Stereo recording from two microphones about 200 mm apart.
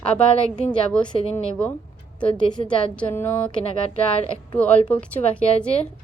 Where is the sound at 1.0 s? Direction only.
30° left (ahead or behind).